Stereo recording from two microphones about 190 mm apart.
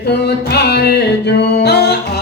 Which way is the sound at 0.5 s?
60° left (ahead or behind).